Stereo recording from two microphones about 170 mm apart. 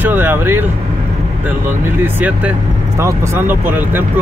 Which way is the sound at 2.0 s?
10° right (ahead or behind).